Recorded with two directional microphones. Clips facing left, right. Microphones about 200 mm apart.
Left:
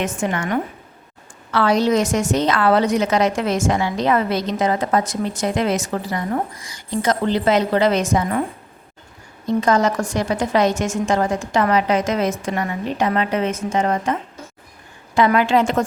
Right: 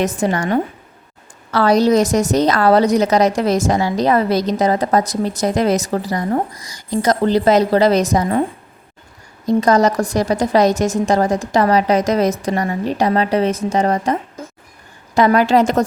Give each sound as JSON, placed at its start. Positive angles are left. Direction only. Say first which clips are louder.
{"t": 0.0, "sound": "a woman's voice", "louder": "right 4 dB", "side_deg": -40}
{"t": 9.5, "sound": "a woman's voice", "louder": "right 4 dB", "side_deg": -40}